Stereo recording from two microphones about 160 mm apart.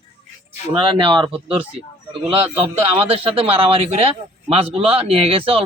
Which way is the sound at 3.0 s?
35° right (ahead or behind).